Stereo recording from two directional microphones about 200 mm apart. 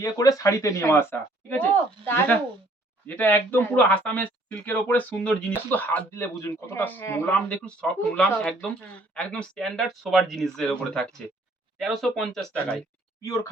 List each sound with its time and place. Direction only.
0.0 s speech: 15° left (ahead or behind)
2.0 s speech: 10° left (ahead or behind)
13.2 s speech: 15° left (ahead or behind)